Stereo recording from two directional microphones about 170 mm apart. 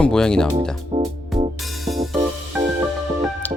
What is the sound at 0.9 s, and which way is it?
Music, 35° right (ahead or behind).